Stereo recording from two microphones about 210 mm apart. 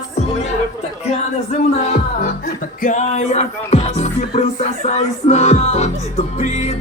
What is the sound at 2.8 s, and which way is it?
Music, 35° left (ahead or behind).